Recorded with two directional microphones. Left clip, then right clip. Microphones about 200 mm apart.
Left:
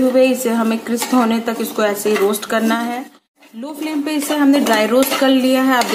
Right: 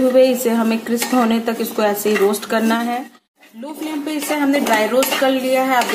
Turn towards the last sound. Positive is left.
turn(degrees=20)  # may be behind; listen again after turning